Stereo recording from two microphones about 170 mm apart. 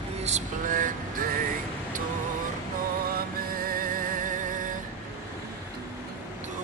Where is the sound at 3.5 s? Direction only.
60° right (ahead or behind).